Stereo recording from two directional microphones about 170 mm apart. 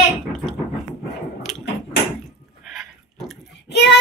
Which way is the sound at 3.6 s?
85° left.